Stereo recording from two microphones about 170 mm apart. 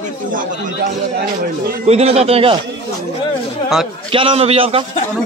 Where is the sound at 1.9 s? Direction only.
40° right (ahead or behind).